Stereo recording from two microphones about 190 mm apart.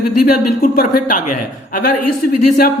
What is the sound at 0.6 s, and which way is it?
Speech, 45° left (ahead or behind).